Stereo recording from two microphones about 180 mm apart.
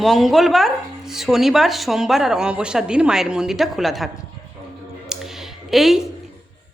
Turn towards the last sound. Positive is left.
turn(degrees=0)  # may be behind; listen again after turning